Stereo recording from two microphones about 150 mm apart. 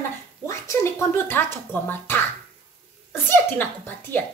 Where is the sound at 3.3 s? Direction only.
15° left (ahead or behind).